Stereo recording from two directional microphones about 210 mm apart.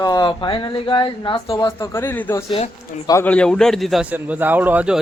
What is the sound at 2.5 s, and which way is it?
Speech, 25° left (ahead or behind).